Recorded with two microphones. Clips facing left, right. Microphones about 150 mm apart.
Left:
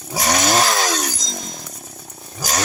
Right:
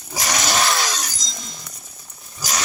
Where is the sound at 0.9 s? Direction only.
55° left (ahead or behind).